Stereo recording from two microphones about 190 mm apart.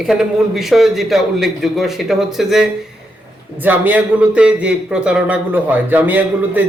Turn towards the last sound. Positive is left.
turn(degrees=-10)  # may be behind; listen again after turning